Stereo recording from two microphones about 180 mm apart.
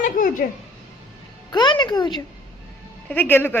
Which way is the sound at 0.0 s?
45° left (ahead or behind).